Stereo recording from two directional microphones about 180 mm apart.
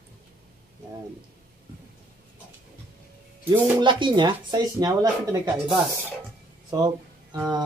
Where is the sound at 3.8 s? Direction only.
25° right (ahead or behind).